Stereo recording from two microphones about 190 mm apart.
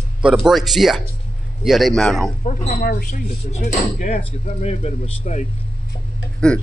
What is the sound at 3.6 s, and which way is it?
Speech, 50° left (ahead or behind).